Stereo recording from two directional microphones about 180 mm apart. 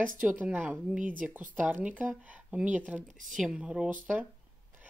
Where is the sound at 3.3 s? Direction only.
5° right (ahead or behind).